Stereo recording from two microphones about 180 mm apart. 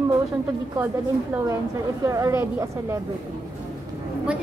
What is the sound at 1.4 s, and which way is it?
A woman's voice, 15° right (ahead or behind).